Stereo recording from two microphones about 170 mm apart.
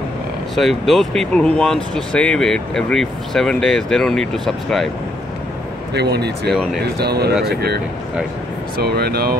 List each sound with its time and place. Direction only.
0.6 s speech: centre (ahead or behind)
5.9 s speech: 75° right (ahead or behind)
6.5 s speech: centre (ahead or behind)
6.8 s speech: 70° right (ahead or behind)